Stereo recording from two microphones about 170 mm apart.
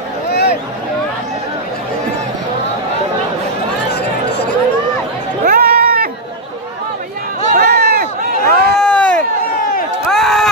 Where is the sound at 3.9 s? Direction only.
80° left.